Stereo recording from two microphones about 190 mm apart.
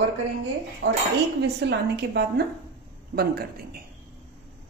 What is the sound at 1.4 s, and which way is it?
A woman's voice, 60° right (ahead or behind).